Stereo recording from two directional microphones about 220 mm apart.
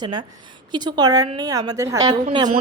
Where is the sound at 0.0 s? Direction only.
20° right (ahead or behind).